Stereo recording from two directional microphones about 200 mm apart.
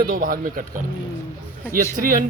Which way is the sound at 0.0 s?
45° right (ahead or behind).